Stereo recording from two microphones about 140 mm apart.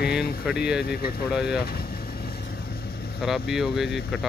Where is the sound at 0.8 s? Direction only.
90° left.